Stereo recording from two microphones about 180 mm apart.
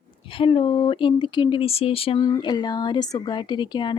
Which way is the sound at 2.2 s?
20° left (ahead or behind).